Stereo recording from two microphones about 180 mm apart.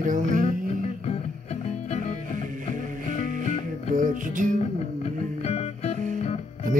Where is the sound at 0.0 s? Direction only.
45° right (ahead or behind).